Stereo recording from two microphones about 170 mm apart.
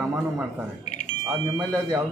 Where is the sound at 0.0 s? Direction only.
10° right (ahead or behind).